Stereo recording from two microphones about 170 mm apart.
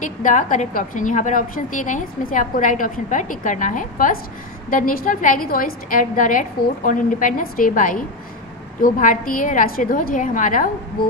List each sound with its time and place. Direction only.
0.0 s a woman's voice: 50° left (ahead or behind)